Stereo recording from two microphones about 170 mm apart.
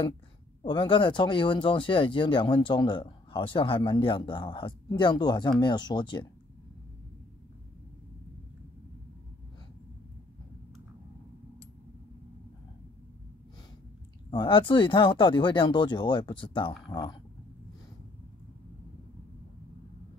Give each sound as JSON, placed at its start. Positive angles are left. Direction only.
{"t": 0.7, "sound": "speech", "side_deg": 30}
{"t": 14.3, "sound": "speech", "side_deg": 30}